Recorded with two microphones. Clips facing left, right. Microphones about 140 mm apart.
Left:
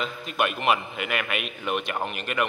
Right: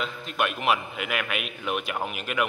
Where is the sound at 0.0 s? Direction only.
Centre (ahead or behind).